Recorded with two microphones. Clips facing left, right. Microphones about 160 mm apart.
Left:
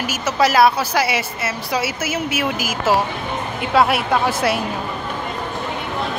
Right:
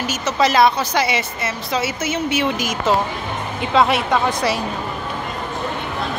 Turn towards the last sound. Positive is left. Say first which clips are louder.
# even
turn(degrees=5)  # may be behind; listen again after turning